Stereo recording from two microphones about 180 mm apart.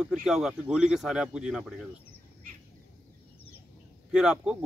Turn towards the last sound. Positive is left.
turn(degrees=-5)  # may be behind; listen again after turning